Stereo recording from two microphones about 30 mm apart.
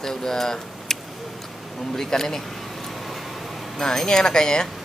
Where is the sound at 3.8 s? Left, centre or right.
Centre.